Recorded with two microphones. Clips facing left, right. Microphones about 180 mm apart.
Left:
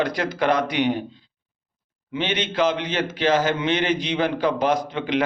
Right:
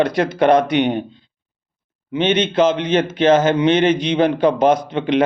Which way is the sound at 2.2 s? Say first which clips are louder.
Right 7 dB; 20° right (ahead or behind).